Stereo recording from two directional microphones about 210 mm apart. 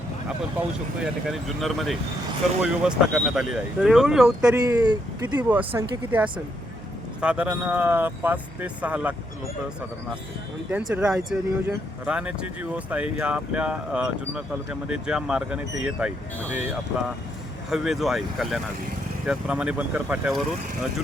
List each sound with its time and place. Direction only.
0.6 s speech: 10° right (ahead or behind)
4.6 s speech: 20° right (ahead or behind)
5.4 s speech: 10° right (ahead or behind)
10.7 s speech: 5° right (ahead or behind)
17.7 s speech: centre (ahead or behind)